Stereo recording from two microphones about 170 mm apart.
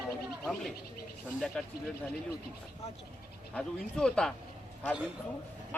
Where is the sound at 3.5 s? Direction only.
5° left (ahead or behind).